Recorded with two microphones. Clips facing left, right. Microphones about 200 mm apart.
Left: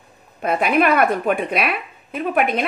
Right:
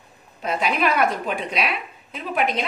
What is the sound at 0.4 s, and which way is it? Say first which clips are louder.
A woman's voice: left 5 dB; 55° left (ahead or behind).